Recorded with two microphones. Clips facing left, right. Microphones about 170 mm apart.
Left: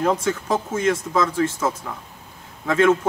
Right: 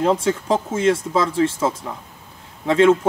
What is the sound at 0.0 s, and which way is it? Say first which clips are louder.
Speech: right 3 dB; 30° right (ahead or behind).